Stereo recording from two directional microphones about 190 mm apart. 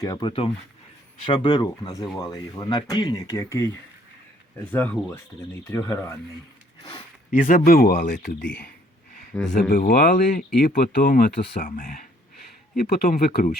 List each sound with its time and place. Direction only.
0.0 s speech: 20° left (ahead or behind)
7.3 s speech: 45° left (ahead or behind)
8.2 s speech: 55° left (ahead or behind)